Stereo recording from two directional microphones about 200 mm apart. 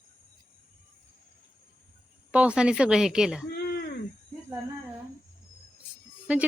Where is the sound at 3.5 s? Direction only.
50° left (ahead or behind).